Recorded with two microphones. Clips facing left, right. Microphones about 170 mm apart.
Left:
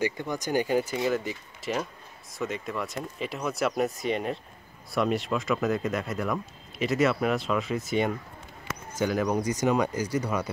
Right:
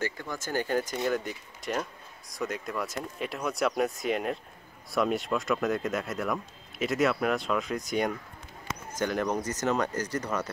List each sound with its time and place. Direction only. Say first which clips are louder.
0.0 s speech: left 5 dB; 15° left (ahead or behind)